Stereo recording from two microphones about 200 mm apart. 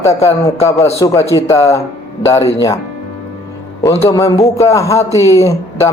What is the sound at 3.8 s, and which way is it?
A man's voice, 15° left (ahead or behind).